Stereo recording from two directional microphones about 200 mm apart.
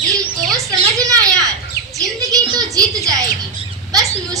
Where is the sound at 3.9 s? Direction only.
15° right (ahead or behind).